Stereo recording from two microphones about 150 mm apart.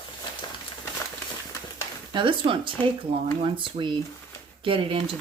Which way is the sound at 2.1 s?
35° right (ahead or behind).